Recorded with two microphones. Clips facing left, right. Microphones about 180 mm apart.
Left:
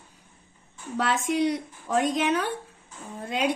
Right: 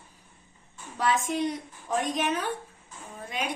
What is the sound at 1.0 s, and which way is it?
A woman's voice, 70° left (ahead or behind).